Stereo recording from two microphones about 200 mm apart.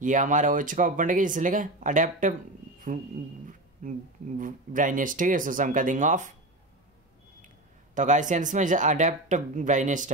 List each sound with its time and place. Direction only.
0.0 s speech: 40° right (ahead or behind)
3.8 s speech: 40° right (ahead or behind)
7.4 s speech: 40° right (ahead or behind)